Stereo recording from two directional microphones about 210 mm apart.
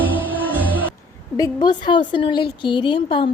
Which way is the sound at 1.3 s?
20° left (ahead or behind).